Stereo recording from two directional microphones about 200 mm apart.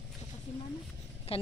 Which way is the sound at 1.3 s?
30° left (ahead or behind).